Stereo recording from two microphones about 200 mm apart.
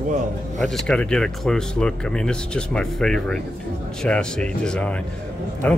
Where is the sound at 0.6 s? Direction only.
5° left (ahead or behind).